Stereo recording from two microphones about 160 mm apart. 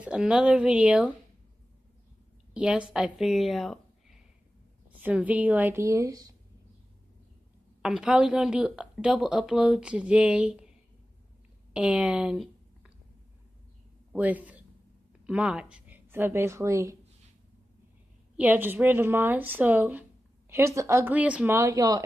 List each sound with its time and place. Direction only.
0.0 s a woman's voice: 5° right (ahead or behind)
2.5 s a woman's voice: 5° right (ahead or behind)
4.9 s a woman's voice: 10° right (ahead or behind)
7.8 s speech: 5° right (ahead or behind)
11.7 s a sound: 5° right (ahead or behind)
14.1 s speech: 10° right (ahead or behind)
18.3 s a woman's voice: 10° right (ahead or behind)
21.5 s speech: 20° right (ahead or behind)